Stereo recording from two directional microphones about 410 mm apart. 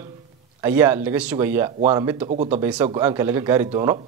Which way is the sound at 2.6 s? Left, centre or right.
Centre.